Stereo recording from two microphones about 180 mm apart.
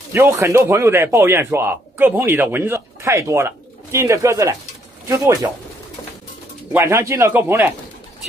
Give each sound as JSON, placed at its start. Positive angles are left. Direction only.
{"t": 0.1, "sound": "speech", "side_deg": -15}
{"t": 6.7, "sound": "speech", "side_deg": -15}